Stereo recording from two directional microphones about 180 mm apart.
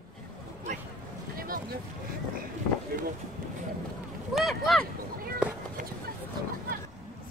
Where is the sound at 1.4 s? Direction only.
55° right (ahead or behind).